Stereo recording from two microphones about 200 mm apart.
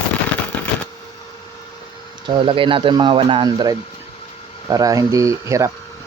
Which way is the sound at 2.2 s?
25° right (ahead or behind).